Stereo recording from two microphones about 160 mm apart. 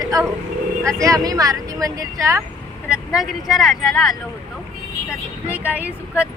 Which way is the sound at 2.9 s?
5° right (ahead or behind).